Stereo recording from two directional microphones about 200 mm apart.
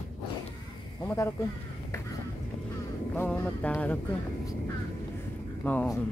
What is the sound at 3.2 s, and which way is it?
Speech, 10° left (ahead or behind).